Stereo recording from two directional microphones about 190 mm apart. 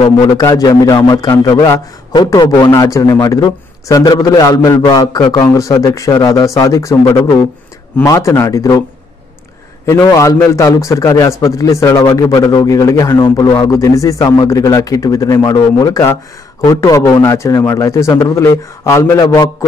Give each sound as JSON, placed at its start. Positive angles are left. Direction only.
{"t": 0.0, "sound": "a man's voice", "side_deg": 20}
{"t": 9.8, "sound": "a man's voice", "side_deg": 20}